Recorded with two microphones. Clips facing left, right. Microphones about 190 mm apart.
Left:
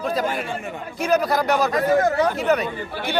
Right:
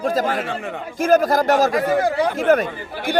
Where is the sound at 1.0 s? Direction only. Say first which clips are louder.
Right 4 dB; 45° right (ahead or behind).